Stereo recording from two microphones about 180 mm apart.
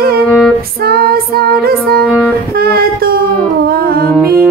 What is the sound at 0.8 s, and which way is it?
Female singing, 55° right (ahead or behind).